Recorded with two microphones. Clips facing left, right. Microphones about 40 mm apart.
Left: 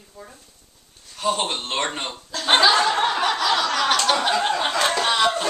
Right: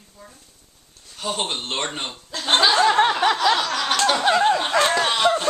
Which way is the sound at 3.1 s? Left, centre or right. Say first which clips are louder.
Right 2 dB; centre.